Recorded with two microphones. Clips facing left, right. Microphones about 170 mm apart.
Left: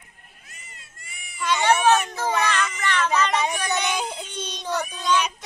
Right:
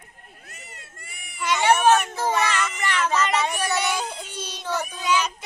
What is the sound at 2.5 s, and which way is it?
Cat, 10° right (ahead or behind).